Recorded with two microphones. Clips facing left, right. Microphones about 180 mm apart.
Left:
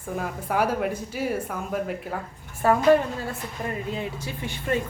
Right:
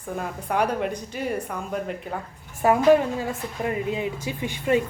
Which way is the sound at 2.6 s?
15° right (ahead or behind).